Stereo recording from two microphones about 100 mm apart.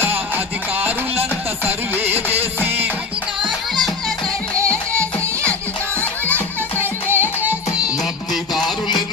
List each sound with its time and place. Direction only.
0.0 s music: 20° right (ahead or behind)
3.4 s music: centre (ahead or behind)
6.7 s music: 25° right (ahead or behind)
8.6 s a sound: 45° left (ahead or behind)